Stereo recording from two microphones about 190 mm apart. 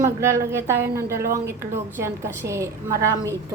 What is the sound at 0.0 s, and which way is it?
A woman's voice, 15° right (ahead or behind).